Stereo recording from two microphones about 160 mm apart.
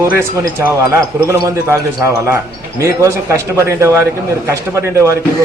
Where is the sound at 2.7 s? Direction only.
20° right (ahead or behind).